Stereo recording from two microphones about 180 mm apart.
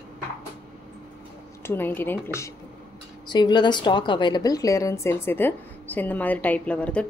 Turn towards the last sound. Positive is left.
turn(degrees=5)  # may be behind; listen again after turning